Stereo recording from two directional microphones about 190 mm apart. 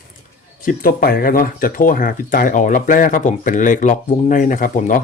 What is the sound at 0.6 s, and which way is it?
Speech, 45° left (ahead or behind).